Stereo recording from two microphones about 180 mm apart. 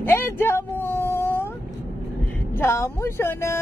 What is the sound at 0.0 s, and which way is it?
Cat, 15° left (ahead or behind).